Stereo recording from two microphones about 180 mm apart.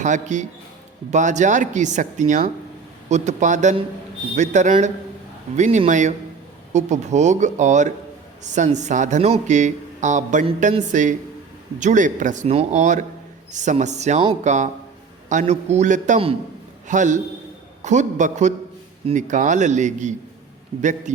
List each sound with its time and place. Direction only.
0.0 s speech: 40° right (ahead or behind)
20.7 s a man's voice: 30° right (ahead or behind)